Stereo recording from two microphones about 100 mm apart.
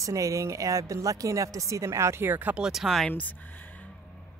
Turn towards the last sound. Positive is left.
turn(degrees=15)  # may be behind; listen again after turning